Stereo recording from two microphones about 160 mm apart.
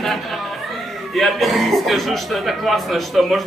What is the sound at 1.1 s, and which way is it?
Speech, centre (ahead or behind).